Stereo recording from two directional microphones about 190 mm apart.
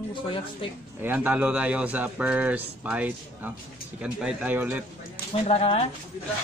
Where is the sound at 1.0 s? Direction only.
10° right (ahead or behind).